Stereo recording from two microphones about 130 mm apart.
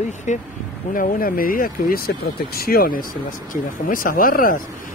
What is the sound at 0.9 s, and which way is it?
Speech, 90° left.